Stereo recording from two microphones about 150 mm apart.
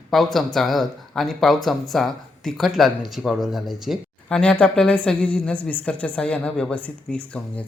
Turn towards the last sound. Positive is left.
turn(degrees=10)  # may be behind; listen again after turning